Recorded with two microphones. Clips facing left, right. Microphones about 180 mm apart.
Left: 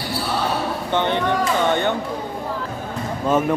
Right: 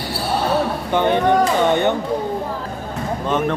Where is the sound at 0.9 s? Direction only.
15° right (ahead or behind).